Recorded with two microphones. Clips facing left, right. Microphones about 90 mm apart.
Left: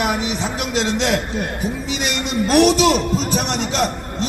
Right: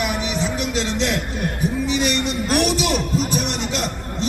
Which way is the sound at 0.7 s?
70° left (ahead or behind).